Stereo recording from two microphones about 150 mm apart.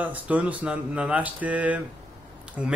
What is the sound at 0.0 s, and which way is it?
A man's voice, 10° right (ahead or behind).